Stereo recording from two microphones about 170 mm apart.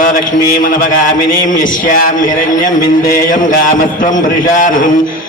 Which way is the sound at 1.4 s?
50° left (ahead or behind).